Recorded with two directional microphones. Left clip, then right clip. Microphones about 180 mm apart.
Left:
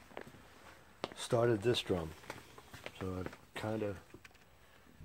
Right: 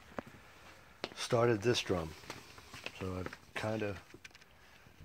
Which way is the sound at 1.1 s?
15° right (ahead or behind).